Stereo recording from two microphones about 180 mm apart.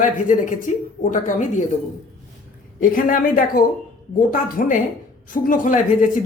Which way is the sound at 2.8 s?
50° left (ahead or behind).